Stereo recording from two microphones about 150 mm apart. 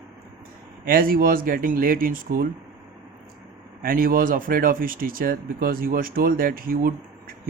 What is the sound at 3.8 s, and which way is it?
Speech, 75° right (ahead or behind).